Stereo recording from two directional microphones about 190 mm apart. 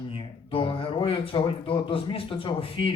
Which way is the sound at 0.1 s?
30° left (ahead or behind).